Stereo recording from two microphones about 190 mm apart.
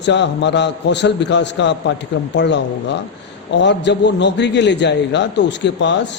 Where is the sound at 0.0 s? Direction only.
65° left (ahead or behind).